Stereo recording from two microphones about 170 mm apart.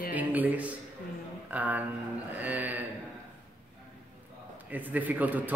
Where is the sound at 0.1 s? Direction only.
10° right (ahead or behind).